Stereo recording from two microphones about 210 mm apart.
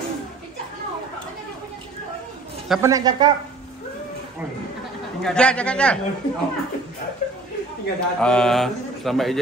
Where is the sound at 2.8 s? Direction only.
15° right (ahead or behind).